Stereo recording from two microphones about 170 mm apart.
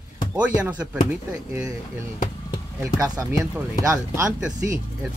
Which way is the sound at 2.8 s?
20° right (ahead or behind).